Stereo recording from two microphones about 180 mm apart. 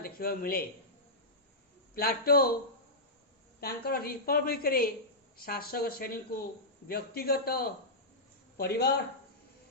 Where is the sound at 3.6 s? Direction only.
55° left (ahead or behind).